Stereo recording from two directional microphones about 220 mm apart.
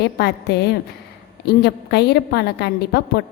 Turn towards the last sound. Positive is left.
turn(degrees=50)  # may be behind; listen again after turning